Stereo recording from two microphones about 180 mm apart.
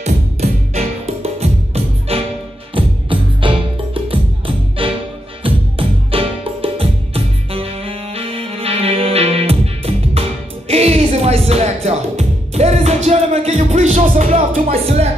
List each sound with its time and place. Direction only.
0.0 s music: 40° right (ahead or behind)